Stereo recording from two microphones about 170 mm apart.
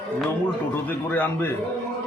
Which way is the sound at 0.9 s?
10° left (ahead or behind).